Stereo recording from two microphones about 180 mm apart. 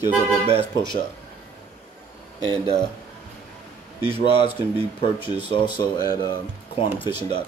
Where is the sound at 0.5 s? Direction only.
25° left (ahead or behind).